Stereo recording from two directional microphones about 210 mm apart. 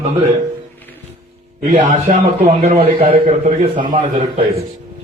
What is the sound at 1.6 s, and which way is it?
A man's voice, 35° right (ahead or behind).